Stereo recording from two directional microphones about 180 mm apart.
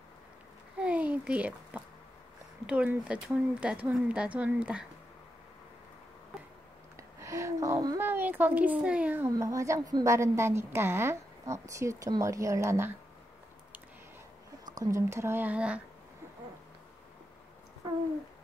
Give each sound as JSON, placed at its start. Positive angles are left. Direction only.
{"t": 0.7, "sound": "a sound", "side_deg": -10}
{"t": 2.6, "sound": "a woman's voice", "side_deg": -5}
{"t": 7.0, "sound": "a woman's voice", "side_deg": -15}
{"t": 14.7, "sound": "a woman's voice", "side_deg": -20}